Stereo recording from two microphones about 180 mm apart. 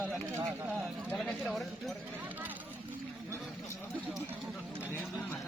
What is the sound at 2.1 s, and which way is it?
Speech, 10° right (ahead or behind).